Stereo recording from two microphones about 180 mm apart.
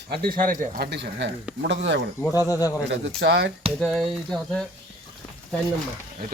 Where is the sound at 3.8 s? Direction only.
Centre (ahead or behind).